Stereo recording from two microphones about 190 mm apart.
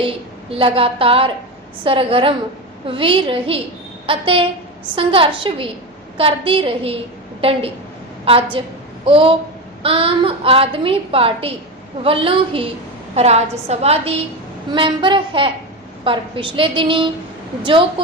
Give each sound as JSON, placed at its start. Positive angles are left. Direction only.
{"t": 0.5, "sound": "a woman's voice", "side_deg": -30}